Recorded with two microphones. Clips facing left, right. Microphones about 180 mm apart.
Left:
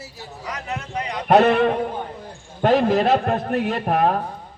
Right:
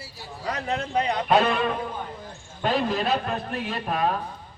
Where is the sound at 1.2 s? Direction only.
65° left (ahead or behind).